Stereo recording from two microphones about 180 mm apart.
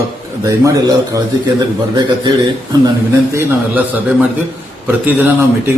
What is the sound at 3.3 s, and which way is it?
Speech, 10° right (ahead or behind).